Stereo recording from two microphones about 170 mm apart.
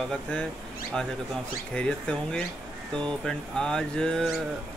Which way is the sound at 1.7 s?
5° left (ahead or behind).